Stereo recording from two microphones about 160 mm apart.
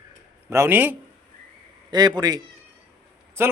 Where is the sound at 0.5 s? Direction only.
15° right (ahead or behind).